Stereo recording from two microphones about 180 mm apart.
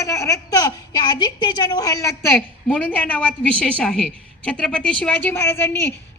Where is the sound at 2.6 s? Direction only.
5° left (ahead or behind).